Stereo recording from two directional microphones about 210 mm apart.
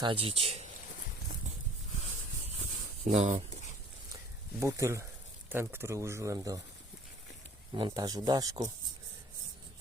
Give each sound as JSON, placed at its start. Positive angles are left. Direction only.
{"t": 0.0, "sound": "speech", "side_deg": -25}
{"t": 3.0, "sound": "speech", "side_deg": -35}
{"t": 4.6, "sound": "speech", "side_deg": -15}
{"t": 7.7, "sound": "speech", "side_deg": -20}